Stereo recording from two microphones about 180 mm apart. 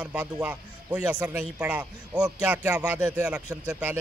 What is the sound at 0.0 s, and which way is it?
A man's voice, 5° right (ahead or behind).